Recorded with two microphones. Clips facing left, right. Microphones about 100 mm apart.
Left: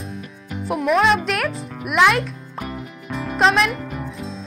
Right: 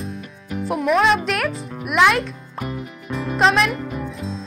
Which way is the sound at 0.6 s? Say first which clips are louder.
Even; centre (ahead or behind).